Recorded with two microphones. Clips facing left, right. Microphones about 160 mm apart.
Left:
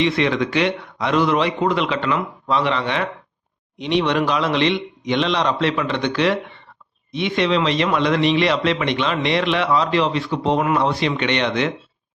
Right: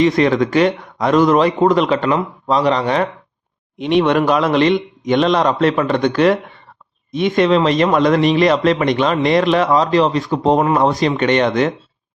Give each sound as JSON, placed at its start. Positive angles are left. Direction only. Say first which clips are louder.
{"t": 0.0, "sound": "a man's voice", "louder": "right 5 dB", "side_deg": -45}
{"t": 3.8, "sound": "a man's voice", "louder": "right 5 dB", "side_deg": -50}